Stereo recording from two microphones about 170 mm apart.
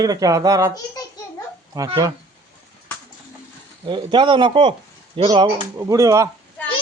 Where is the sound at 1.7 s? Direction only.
20° right (ahead or behind).